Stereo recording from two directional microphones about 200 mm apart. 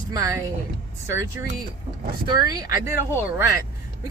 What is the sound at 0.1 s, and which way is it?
Speech, 20° right (ahead or behind).